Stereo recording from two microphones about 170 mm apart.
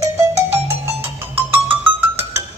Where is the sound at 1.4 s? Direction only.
10° right (ahead or behind).